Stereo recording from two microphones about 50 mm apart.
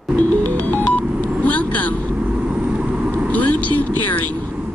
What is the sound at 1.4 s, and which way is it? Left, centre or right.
Vehicle, left.